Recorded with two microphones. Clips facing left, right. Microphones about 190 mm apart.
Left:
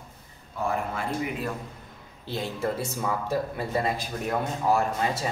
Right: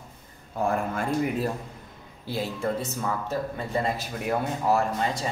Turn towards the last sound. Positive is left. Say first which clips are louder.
# even
turn(degrees=0)  # may be behind; listen again after turning